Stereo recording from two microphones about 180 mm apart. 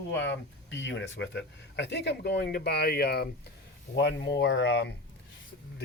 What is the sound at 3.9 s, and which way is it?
Speech, 75° left (ahead or behind).